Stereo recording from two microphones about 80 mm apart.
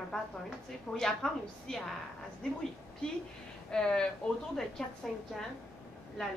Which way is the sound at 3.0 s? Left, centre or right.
Centre.